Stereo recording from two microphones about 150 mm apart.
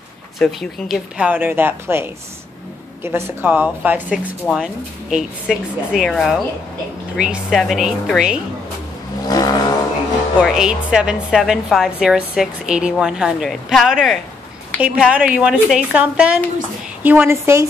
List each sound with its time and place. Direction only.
0.4 s a woman's voice: centre (ahead or behind)
9.3 s vehicle: 25° left (ahead or behind)
10.4 s a woman's voice: 5° right (ahead or behind)